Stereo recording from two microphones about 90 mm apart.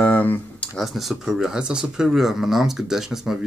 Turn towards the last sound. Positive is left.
turn(degrees=-5)  # may be behind; listen again after turning